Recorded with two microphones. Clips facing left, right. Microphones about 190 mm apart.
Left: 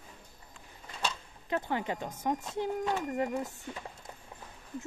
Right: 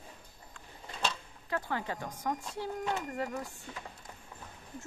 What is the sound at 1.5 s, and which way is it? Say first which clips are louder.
Speech: left 3 dB; 20° left (ahead or behind).